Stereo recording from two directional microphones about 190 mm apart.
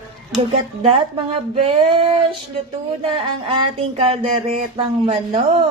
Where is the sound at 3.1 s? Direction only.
25° right (ahead or behind).